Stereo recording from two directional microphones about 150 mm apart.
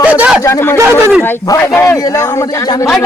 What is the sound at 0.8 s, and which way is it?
Speech, 15° right (ahead or behind).